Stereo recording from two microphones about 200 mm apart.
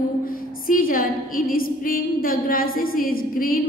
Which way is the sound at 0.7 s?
45° left (ahead or behind).